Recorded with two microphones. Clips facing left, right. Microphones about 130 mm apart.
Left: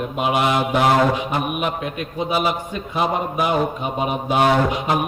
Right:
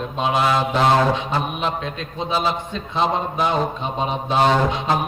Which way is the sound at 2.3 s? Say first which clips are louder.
Even; 15° left (ahead or behind).